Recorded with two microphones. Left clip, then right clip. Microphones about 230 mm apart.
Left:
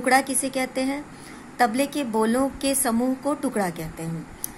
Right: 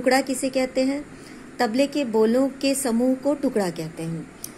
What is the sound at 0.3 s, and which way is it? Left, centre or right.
Speech, left.